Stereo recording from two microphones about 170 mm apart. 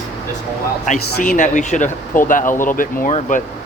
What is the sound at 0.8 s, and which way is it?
Speech, 50° left (ahead or behind).